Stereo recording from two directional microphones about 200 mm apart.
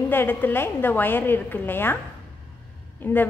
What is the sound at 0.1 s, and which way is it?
A woman's voice, 10° left (ahead or behind).